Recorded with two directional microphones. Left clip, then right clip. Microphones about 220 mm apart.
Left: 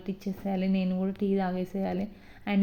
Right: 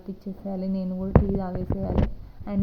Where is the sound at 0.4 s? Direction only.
20° left (ahead or behind).